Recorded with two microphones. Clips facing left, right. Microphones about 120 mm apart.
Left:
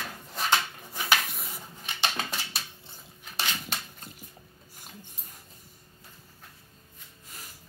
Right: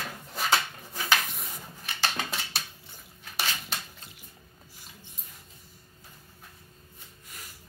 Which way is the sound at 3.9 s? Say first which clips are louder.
Left 4 dB; 45° left (ahead or behind).